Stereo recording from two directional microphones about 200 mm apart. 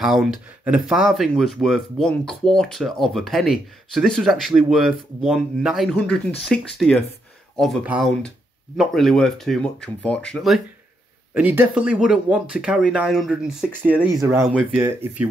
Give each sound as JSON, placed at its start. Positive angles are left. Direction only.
{"t": 0.0, "sound": "speech", "side_deg": 0}
{"t": 11.3, "sound": "speech", "side_deg": -10}